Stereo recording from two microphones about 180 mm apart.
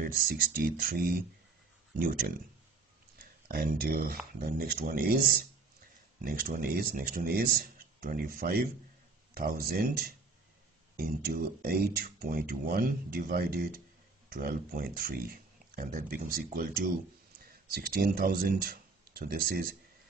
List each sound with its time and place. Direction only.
0.0 s speech: 55° right (ahead or behind)
17.7 s speech: 55° right (ahead or behind)